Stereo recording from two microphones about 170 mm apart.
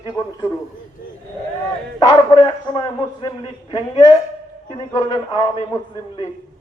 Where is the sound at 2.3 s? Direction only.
30° left (ahead or behind).